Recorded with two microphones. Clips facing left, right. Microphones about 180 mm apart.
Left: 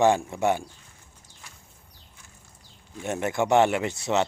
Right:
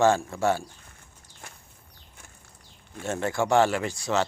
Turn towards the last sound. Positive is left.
turn(degrees=20)  # may be behind; listen again after turning